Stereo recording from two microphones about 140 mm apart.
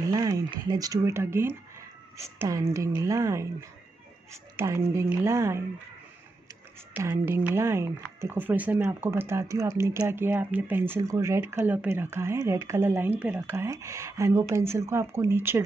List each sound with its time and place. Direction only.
0.1 s speech: 25° right (ahead or behind)
7.0 s speech: 20° right (ahead or behind)